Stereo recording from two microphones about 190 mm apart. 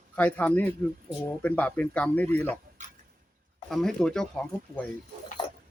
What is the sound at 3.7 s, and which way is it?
Speech, 5° left (ahead or behind).